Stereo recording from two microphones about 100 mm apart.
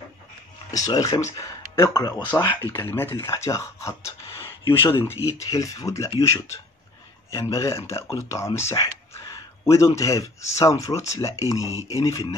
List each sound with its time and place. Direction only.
0.7 s speech: 35° left (ahead or behind)
2.5 s speech: 25° left (ahead or behind)
5.5 s speech: 35° left (ahead or behind)
7.5 s speech: 30° left (ahead or behind)